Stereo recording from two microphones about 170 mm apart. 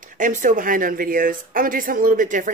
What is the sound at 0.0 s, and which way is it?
Speech, 50° right (ahead or behind).